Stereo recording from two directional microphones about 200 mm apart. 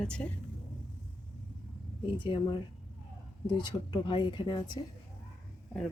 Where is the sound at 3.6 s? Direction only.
20° left (ahead or behind).